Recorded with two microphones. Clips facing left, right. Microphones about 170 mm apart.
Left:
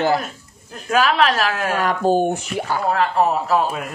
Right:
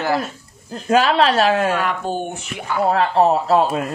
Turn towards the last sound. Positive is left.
turn(degrees=-35)  # may be behind; listen again after turning